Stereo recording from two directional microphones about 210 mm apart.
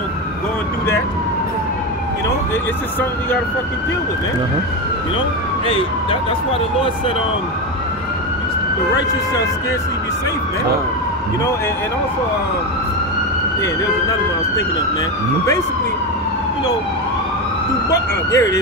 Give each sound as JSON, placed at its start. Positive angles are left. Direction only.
{"t": 17.9, "sound": "frog", "side_deg": 15}